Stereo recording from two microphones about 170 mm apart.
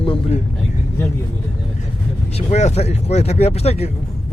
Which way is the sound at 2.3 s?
40° left (ahead or behind).